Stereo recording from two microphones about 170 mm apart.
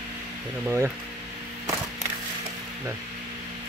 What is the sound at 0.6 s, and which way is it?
Speech, 10° right (ahead or behind).